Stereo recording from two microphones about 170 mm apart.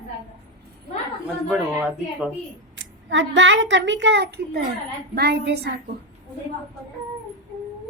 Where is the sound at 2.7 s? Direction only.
90° right; by 5.7 s 70° right (ahead or behind).